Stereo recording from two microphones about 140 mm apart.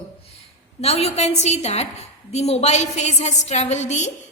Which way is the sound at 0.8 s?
50° left (ahead or behind).